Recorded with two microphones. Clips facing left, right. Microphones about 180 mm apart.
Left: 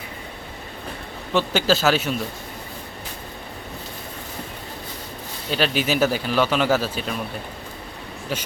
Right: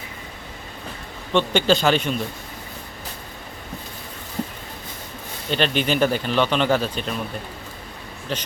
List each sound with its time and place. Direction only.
1.3 s speech: 5° left (ahead or behind)
5.5 s speech: 5° left (ahead or behind)
8.3 s speech: 10° left (ahead or behind)